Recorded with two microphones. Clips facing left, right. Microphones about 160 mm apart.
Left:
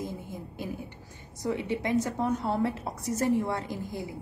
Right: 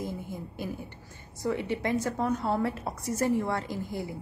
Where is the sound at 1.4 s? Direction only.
15° left (ahead or behind).